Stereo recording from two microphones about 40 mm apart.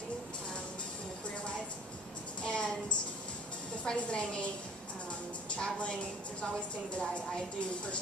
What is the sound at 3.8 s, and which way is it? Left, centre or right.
Speech, left.